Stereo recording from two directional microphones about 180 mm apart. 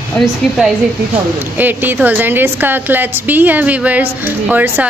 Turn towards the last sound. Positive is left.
turn(degrees=-10)  # may be behind; listen again after turning